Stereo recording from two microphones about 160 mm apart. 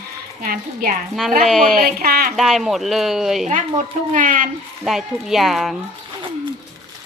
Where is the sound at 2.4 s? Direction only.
Centre (ahead or behind).